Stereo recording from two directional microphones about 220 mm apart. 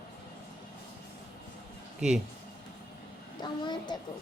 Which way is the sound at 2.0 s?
5° right (ahead or behind).